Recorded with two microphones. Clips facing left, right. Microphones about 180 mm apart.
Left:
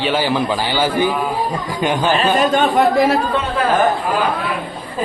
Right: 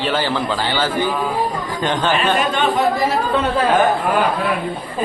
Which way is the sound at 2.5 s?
50° left (ahead or behind).